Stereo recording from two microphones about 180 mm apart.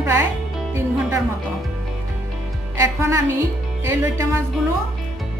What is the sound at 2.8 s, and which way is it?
Speech, 15° right (ahead or behind).